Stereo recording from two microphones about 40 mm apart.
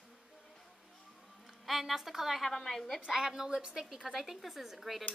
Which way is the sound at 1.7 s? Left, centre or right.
Centre.